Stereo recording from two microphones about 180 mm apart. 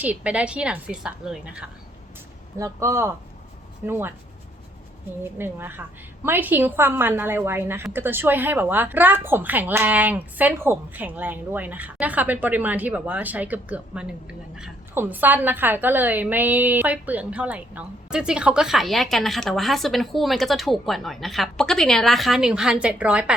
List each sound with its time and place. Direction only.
0.0 s a woman's voice: 10° right (ahead or behind)
2.6 s a woman's voice: 15° right (ahead or behind)
5.2 s a woman's voice: 10° right (ahead or behind)